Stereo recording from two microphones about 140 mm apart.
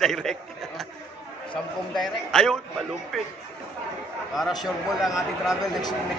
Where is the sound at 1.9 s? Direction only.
Centre (ahead or behind).